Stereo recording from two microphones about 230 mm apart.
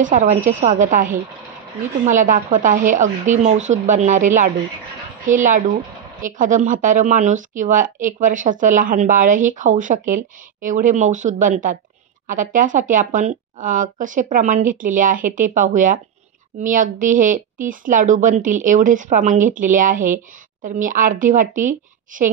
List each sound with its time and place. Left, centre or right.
0.0 s a woman's voice: right